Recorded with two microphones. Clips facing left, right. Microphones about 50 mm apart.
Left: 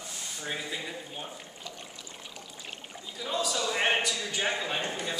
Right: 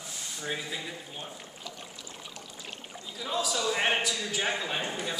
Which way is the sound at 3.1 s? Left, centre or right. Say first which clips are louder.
Even; centre.